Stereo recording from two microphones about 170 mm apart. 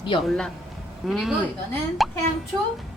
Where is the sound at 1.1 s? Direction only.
Centre (ahead or behind).